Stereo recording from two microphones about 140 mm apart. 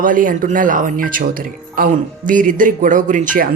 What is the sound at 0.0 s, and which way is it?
Speech, 75° right (ahead or behind).